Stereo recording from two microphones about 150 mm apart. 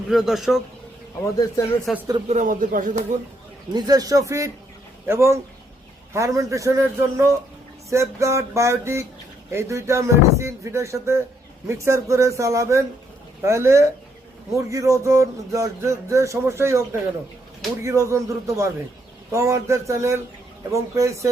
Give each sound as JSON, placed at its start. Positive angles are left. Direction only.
{"t": 0.1, "sound": "a man's voice", "side_deg": 0}
{"t": 1.9, "sound": "a man's voice", "side_deg": 0}
{"t": 2.2, "sound": "speech", "side_deg": -55}
{"t": 3.8, "sound": "speech", "side_deg": -25}